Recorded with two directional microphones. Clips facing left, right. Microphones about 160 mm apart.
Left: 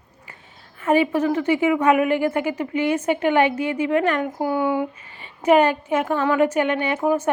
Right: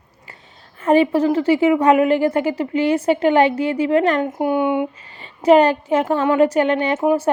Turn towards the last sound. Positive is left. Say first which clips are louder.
# right 4 dB
turn(degrees=-35)  # may be behind; listen again after turning